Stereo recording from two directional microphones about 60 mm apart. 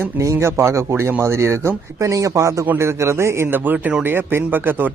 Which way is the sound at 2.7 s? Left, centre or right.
Right.